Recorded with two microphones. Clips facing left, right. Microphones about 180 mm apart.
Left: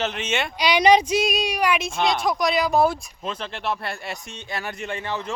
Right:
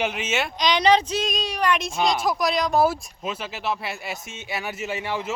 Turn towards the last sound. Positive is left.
turn(degrees=-10)  # may be behind; listen again after turning